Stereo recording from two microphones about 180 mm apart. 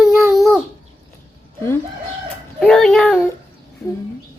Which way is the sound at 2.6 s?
5° left (ahead or behind).